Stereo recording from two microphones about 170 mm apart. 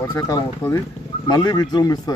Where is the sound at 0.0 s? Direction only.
20° left (ahead or behind).